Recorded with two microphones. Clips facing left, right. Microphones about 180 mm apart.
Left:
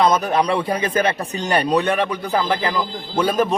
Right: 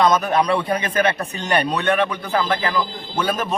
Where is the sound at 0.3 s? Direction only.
30° left (ahead or behind).